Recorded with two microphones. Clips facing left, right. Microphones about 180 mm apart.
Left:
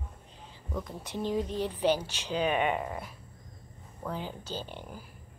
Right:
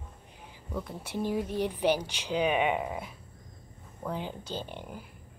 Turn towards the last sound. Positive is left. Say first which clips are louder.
# right 1 dB
turn(degrees=-15)  # may be behind; listen again after turning